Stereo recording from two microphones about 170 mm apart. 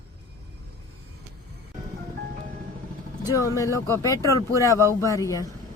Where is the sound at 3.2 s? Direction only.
20° left (ahead or behind).